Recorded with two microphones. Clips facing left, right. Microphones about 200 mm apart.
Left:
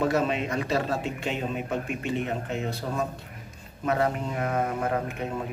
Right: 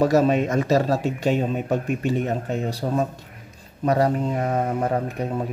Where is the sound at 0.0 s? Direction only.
40° right (ahead or behind).